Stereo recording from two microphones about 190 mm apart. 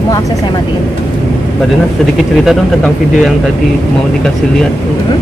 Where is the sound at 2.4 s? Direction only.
Centre (ahead or behind).